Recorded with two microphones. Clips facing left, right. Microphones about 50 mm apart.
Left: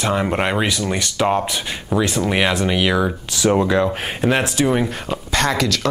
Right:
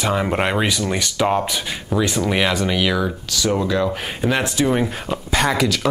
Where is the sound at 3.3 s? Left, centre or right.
Left.